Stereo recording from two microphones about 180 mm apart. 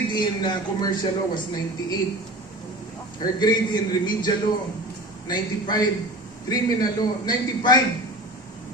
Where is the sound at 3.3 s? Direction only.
25° left (ahead or behind).